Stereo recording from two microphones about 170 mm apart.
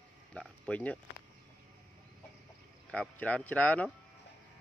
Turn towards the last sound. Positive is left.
turn(degrees=10)  # may be behind; listen again after turning